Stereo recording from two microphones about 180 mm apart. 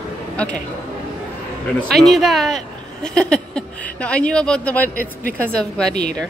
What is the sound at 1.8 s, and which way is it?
Speech, centre (ahead or behind).